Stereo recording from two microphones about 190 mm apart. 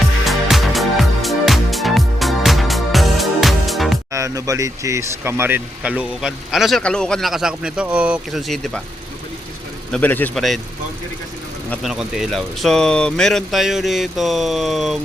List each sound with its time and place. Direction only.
0.3 s music: centre (ahead or behind)
4.1 s speech: 15° right (ahead or behind); by 8.8 s centre (ahead or behind)
9.9 s a man's voice: 10° left (ahead or behind)
11.7 s speech: centre (ahead or behind)